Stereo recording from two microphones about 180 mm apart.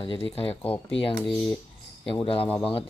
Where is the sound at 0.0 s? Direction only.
30° left (ahead or behind).